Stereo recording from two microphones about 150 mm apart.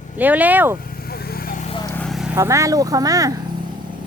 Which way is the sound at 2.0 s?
Centre (ahead or behind).